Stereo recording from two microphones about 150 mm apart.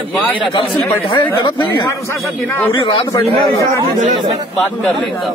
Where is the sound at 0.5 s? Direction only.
30° left (ahead or behind).